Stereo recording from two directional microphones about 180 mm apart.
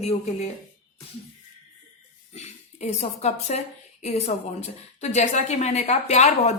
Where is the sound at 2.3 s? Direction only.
40° left (ahead or behind).